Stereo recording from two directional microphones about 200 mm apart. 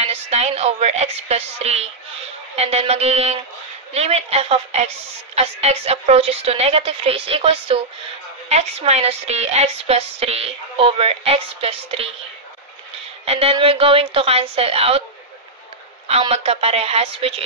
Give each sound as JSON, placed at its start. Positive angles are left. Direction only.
{"t": 0.1, "sound": "a woman's voice", "side_deg": -30}
{"t": 13.2, "sound": "a woman's voice", "side_deg": -30}
{"t": 16.1, "sound": "a woman's voice", "side_deg": -30}